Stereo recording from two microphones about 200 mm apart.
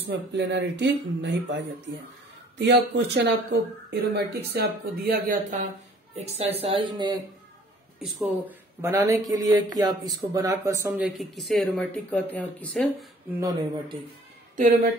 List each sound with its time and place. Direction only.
0.3 s speech: 60° right (ahead or behind); by 5.6 s 45° right (ahead or behind)
6.1 s speech: 30° right (ahead or behind)
8.0 s speech: 5° right (ahead or behind)
13.4 s speech: 15° right (ahead or behind)